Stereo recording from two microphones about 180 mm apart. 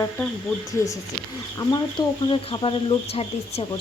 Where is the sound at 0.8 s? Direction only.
15° left (ahead or behind).